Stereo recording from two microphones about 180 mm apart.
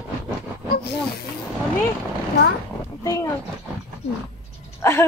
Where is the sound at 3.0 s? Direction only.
20° left (ahead or behind).